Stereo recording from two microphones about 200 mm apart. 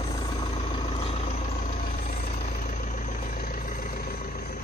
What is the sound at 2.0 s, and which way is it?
Vehicle, 45° left (ahead or behind).